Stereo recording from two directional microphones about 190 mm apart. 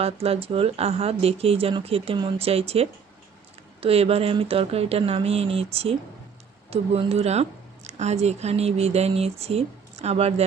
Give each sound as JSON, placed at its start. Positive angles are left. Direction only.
{"t": 0.0, "sound": "a woman's voice", "side_deg": -30}